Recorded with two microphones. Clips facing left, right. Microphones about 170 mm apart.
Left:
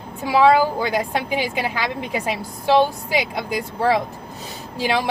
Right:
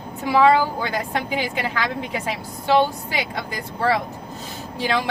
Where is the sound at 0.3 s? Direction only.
15° left (ahead or behind).